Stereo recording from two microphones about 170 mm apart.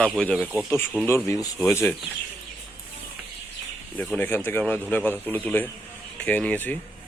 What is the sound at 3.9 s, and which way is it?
Speech, 10° left (ahead or behind).